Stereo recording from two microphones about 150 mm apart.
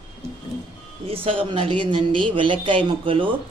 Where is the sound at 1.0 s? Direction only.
40° right (ahead or behind).